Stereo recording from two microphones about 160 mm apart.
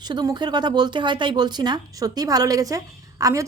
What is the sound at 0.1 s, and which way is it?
A woman's voice, 25° right (ahead or behind).